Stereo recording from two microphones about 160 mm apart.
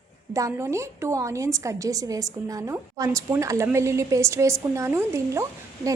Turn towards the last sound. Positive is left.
turn(degrees=-20)  # may be behind; listen again after turning